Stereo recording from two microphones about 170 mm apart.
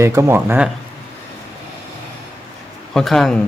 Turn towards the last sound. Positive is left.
turn(degrees=0)  # may be behind; listen again after turning